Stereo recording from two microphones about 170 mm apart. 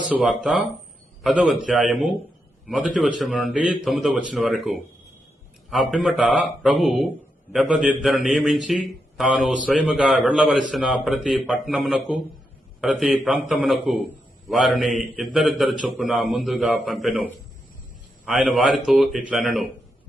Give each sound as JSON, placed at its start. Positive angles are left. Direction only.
{"t": 0.1, "sound": "a man's voice", "side_deg": -5}
{"t": 18.3, "sound": "a man's voice", "side_deg": 0}